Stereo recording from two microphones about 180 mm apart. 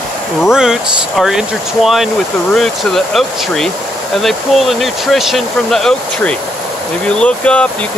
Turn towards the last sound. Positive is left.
turn(degrees=5)  # may be behind; listen again after turning